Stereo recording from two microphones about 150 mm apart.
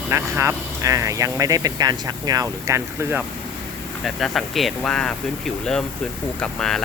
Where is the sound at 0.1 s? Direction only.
15° right (ahead or behind).